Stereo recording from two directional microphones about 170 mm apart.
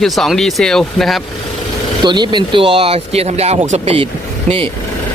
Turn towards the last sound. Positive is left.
turn(degrees=-35)  # may be behind; listen again after turning